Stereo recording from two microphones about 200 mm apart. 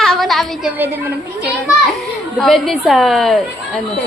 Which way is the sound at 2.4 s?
Centre (ahead or behind).